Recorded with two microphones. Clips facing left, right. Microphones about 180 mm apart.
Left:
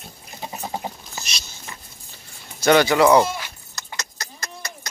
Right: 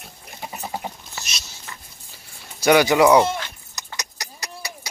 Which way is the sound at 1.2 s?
5° right (ahead or behind).